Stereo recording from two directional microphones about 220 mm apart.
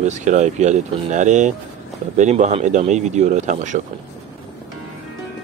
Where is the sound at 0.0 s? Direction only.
35° right (ahead or behind).